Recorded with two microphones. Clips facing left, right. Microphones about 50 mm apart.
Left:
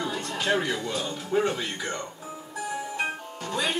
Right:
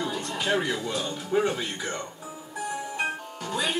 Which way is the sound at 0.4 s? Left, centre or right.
Centre.